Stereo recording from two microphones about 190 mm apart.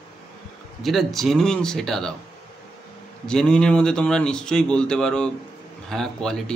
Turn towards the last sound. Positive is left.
turn(degrees=5)  # may be behind; listen again after turning